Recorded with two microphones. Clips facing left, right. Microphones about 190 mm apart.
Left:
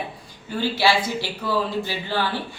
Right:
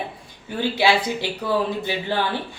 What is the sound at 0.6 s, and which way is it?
Speech, 20° right (ahead or behind).